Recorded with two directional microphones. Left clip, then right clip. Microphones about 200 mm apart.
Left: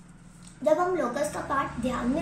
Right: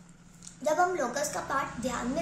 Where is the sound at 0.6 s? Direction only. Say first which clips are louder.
Left 3 dB; 25° right (ahead or behind).